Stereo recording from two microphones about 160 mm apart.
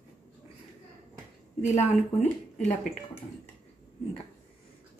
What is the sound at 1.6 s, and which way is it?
A woman's voice, 45° left (ahead or behind).